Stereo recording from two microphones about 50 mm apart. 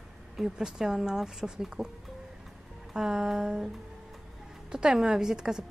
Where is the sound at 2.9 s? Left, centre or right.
Centre.